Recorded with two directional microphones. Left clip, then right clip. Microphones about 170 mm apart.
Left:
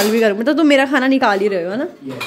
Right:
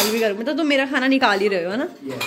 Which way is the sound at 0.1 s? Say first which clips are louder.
Left 6 dB; 35° left (ahead or behind).